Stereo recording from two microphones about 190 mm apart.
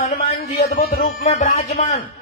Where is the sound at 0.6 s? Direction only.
55° left (ahead or behind).